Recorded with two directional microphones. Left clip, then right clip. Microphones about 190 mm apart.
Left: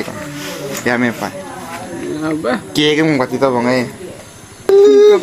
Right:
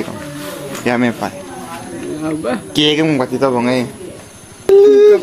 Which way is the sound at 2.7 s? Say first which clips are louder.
Even; 15° right (ahead or behind).